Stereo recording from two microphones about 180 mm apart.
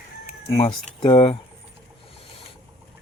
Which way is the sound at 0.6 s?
30° left (ahead or behind).